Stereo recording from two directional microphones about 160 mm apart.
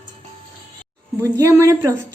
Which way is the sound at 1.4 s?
15° right (ahead or behind).